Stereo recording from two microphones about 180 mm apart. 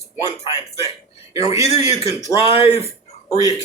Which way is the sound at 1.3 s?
20° right (ahead or behind).